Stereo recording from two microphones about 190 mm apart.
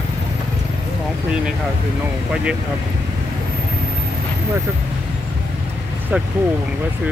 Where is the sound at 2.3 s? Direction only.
5° right (ahead or behind).